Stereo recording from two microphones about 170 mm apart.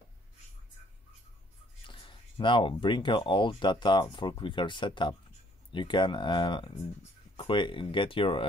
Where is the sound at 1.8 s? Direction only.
30° left (ahead or behind).